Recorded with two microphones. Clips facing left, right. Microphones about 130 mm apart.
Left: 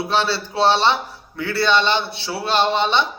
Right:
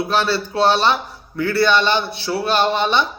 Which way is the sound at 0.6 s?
25° left (ahead or behind).